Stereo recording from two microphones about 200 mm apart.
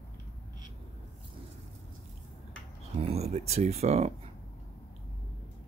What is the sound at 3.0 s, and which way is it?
Speech, 30° right (ahead or behind).